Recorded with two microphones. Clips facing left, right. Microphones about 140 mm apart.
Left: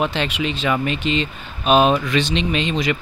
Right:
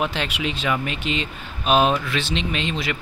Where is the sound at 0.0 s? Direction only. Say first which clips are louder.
Left 3 dB; 5° right (ahead or behind).